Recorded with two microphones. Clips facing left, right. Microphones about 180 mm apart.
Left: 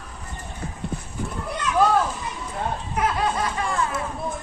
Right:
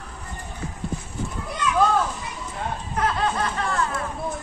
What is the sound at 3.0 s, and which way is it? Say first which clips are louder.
Snicker: even; 10° left (ahead or behind).